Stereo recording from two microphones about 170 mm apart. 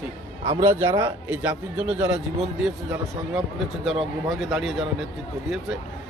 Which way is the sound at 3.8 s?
Centre (ahead or behind).